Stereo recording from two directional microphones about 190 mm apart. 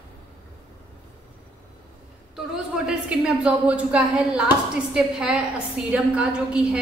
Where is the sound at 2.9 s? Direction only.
5° right (ahead or behind).